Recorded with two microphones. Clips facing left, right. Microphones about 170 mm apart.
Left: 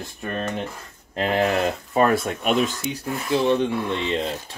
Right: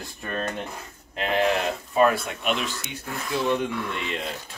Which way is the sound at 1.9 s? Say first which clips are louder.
Left 1 dB; 40° left (ahead or behind).